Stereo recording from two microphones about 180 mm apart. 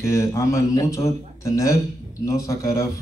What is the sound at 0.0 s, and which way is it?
A man's voice, 15° left (ahead or behind).